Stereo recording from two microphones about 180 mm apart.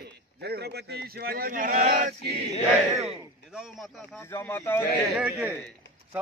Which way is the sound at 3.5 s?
5° right (ahead or behind).